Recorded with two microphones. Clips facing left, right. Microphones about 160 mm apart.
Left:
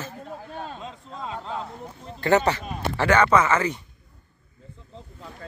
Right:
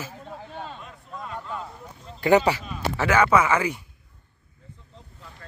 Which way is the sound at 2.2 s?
10° right (ahead or behind).